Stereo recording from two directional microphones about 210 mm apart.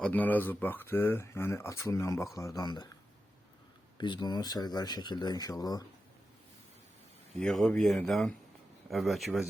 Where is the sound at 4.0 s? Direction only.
20° left (ahead or behind).